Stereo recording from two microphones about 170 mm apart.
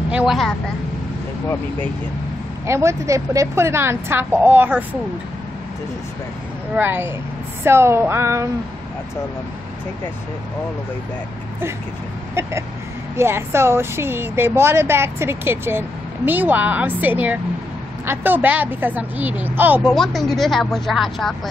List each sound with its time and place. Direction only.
0.1 s a woman's voice: 5° right (ahead or behind)
2.6 s speech: 15° right (ahead or behind)
6.7 s speech: 10° right (ahead or behind)
13.1 s speech: 15° right (ahead or behind)
19.9 s a woman's voice: centre (ahead or behind)